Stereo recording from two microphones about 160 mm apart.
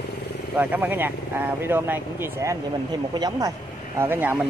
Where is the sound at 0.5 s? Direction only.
10° right (ahead or behind).